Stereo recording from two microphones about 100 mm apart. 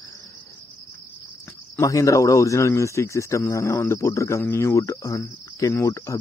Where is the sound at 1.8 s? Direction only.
35° left (ahead or behind).